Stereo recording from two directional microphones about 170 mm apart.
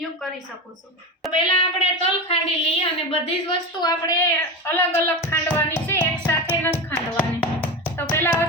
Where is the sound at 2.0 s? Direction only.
35° left (ahead or behind).